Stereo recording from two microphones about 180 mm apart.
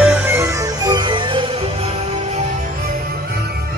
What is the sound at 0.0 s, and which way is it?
Music, 5° right (ahead or behind).